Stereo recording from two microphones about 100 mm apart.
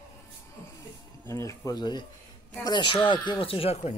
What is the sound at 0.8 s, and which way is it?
Music, 30° left (ahead or behind).